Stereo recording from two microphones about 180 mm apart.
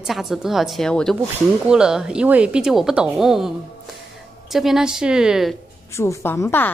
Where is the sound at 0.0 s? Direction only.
Centre (ahead or behind).